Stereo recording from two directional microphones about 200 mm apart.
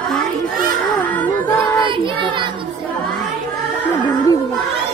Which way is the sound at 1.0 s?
10° left (ahead or behind).